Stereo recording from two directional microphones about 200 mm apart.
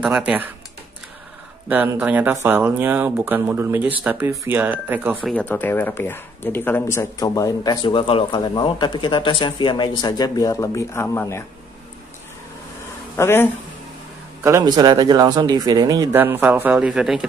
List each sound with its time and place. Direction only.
0.0 s speech: 5° right (ahead or behind)
1.7 s speech: 10° right (ahead or behind)
5.3 s speech: 10° left (ahead or behind)
13.1 s speech: 10° left (ahead or behind)
14.4 s speech: 15° right (ahead or behind)